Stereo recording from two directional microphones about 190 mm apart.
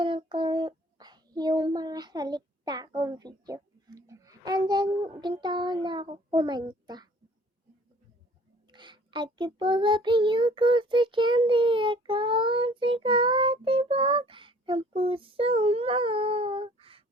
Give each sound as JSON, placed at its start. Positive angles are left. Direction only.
{"t": 0.0, "sound": "child singing", "side_deg": -25}
{"t": 8.7, "sound": "child singing", "side_deg": -25}